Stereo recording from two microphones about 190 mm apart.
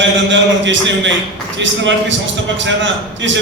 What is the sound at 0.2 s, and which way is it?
A man's voice, 75° right (ahead or behind).